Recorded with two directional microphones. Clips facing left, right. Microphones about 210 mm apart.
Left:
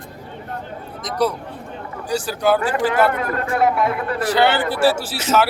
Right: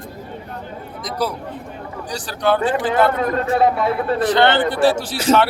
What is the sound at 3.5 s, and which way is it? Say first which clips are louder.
Speech: even; 30° right (ahead or behind).